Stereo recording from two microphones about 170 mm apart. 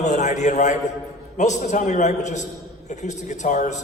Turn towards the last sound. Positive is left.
turn(degrees=45)  # may be behind; listen again after turning